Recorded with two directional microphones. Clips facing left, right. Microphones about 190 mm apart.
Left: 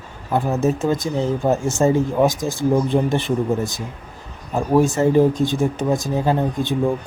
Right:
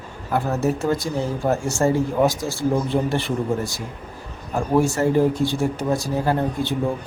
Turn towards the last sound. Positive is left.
turn(degrees=15)  # may be behind; listen again after turning